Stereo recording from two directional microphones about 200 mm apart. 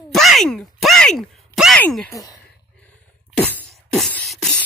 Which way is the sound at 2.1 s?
15° left (ahead or behind).